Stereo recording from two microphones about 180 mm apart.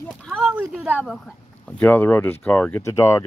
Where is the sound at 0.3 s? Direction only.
5° right (ahead or behind).